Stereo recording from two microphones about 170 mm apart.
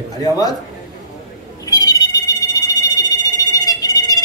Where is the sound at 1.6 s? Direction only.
20° left (ahead or behind).